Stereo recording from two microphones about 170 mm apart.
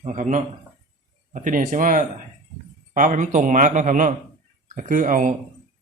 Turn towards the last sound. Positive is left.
turn(degrees=-50)  # may be behind; listen again after turning